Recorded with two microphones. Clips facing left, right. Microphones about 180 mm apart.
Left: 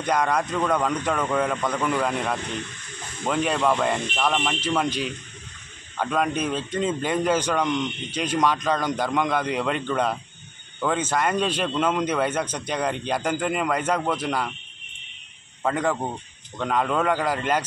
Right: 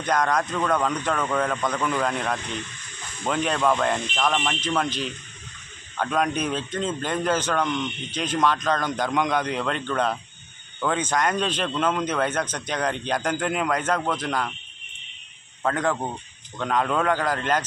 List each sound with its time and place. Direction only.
0.0 s a man's voice: 10° left (ahead or behind)
15.6 s a man's voice: 5° left (ahead or behind)